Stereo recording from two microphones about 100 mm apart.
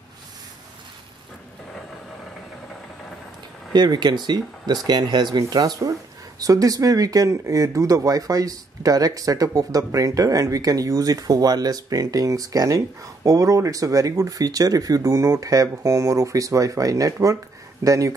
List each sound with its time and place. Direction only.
3.7 s speech: 45° right (ahead or behind)